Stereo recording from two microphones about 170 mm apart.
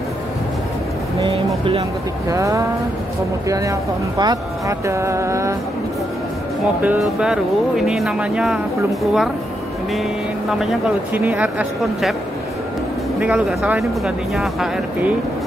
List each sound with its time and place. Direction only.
2.2 s speech: 20° right (ahead or behind)
6.8 s speech: 5° right (ahead or behind)
11.1 s speech: 10° right (ahead or behind)
13.2 s speech: 5° right (ahead or behind)